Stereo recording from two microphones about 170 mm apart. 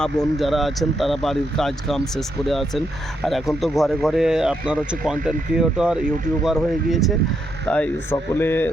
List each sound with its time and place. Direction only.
0.0 s speech: centre (ahead or behind)
7.7 s speech: 10° left (ahead or behind)